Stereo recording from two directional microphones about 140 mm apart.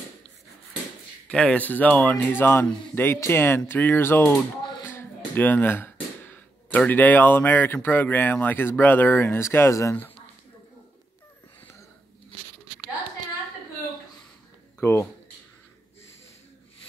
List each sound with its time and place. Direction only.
1.3 s speech: 5° left (ahead or behind)
14.8 s speech: 15° left (ahead or behind)